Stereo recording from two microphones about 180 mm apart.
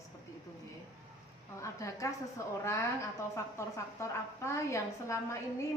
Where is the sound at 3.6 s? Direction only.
15° left (ahead or behind).